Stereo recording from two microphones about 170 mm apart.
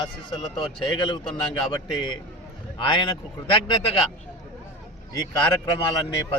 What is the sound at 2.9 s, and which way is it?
Speech, 25° left (ahead or behind).